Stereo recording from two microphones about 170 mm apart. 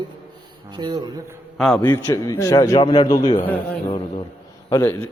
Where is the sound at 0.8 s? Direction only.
25° right (ahead or behind).